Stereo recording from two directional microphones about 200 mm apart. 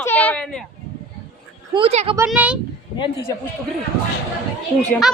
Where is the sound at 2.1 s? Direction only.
10° right (ahead or behind).